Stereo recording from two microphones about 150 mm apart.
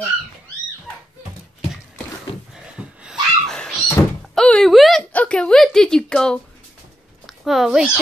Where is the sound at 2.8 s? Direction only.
5° right (ahead or behind).